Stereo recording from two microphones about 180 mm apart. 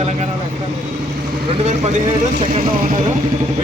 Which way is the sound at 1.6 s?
40° right (ahead or behind).